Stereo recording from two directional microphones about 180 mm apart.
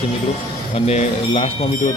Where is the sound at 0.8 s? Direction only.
35° left (ahead or behind).